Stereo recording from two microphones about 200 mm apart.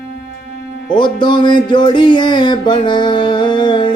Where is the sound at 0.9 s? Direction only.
25° left (ahead or behind).